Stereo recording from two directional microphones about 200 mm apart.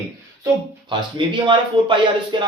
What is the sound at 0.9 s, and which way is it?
Speech, 25° right (ahead or behind).